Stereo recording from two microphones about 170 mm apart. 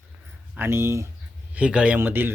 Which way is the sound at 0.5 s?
15° right (ahead or behind).